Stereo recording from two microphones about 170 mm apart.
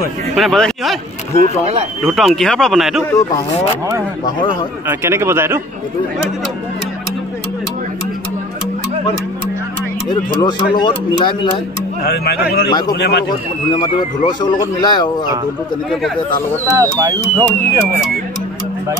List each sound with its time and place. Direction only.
0.4 s speech: centre (ahead or behind)
1.3 s speech: 40° left (ahead or behind)
2.0 s speech: centre (ahead or behind)
3.1 s speech: 20° left (ahead or behind)
4.4 s speech: 25° left (ahead or behind)
4.8 s a man's voice: 15° right (ahead or behind)
10.4 s speech: 25° left (ahead or behind)
12.0 s speech: 70° left (ahead or behind)
12.6 s speech: 25° left (ahead or behind)
12.9 s a man's voice: 80° left
13.7 s speech: 25° left (ahead or behind)
16.6 s speech: 15° right (ahead or behind)